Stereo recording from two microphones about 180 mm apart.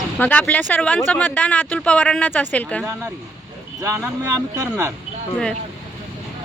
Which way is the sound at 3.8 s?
15° right (ahead or behind).